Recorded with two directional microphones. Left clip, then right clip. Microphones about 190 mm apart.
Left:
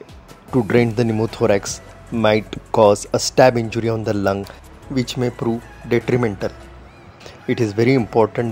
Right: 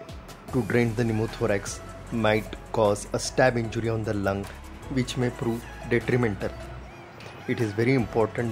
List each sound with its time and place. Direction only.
0.5 s speech: 35° left (ahead or behind)